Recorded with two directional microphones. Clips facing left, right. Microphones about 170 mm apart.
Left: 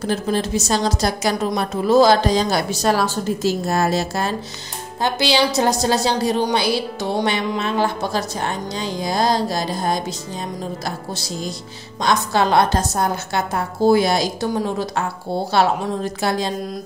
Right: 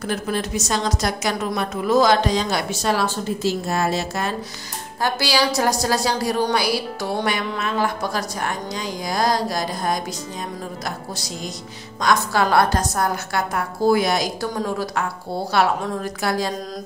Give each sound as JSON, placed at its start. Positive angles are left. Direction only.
{"t": 0.0, "sound": "a woman's voice", "side_deg": 30}
{"t": 5.0, "sound": "speech", "side_deg": 25}
{"t": 12.0, "sound": "speech", "side_deg": 25}
{"t": 15.5, "sound": "speech", "side_deg": 25}